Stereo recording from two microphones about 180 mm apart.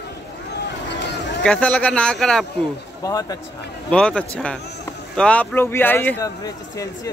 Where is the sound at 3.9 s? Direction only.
5° left (ahead or behind).